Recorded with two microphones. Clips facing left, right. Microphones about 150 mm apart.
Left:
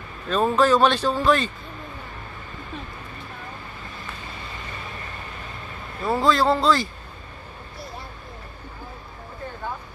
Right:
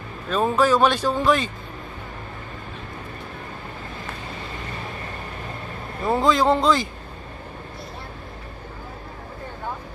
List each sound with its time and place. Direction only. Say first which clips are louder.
0.3 s a man's voice: even; 10° right (ahead or behind)
6.0 s a man's voice: right 1 dB; 20° right (ahead or behind)